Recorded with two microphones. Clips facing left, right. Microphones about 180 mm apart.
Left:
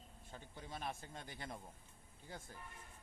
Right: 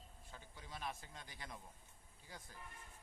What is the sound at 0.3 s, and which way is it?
Speech, 25° left (ahead or behind).